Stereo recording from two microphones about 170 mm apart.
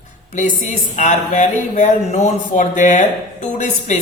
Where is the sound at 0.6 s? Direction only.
45° left (ahead or behind).